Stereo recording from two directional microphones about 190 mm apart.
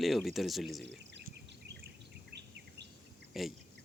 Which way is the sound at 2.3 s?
65° right (ahead or behind).